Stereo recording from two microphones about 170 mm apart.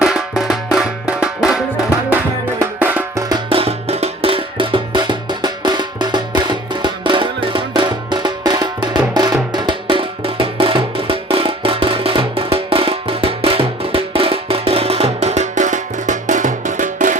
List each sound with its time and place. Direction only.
0.0 s music: 5° right (ahead or behind)
3.2 s music: 30° right (ahead or behind); by 17.2 s 50° right (ahead or behind)